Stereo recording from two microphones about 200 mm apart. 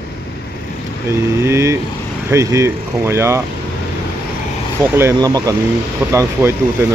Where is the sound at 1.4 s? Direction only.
15° right (ahead or behind).